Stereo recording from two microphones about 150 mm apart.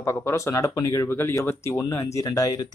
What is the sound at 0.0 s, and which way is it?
Speech, 15° left (ahead or behind).